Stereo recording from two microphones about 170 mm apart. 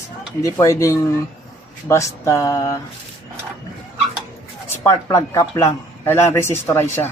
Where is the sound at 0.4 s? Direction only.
20° left (ahead or behind).